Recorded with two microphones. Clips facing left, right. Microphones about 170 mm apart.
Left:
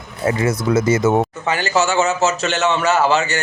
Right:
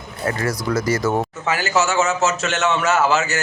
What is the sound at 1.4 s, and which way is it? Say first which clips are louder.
Speech: left 2 dB; 5° right (ahead or behind).